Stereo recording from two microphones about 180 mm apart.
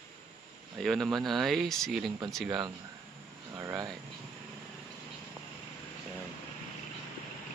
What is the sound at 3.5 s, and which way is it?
Speech, 20° right (ahead or behind).